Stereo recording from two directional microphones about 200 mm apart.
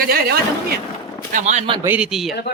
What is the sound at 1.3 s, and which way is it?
Speech, 35° right (ahead or behind).